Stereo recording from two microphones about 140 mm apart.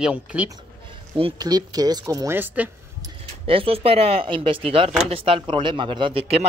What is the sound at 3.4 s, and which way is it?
A man's voice, 40° right (ahead or behind).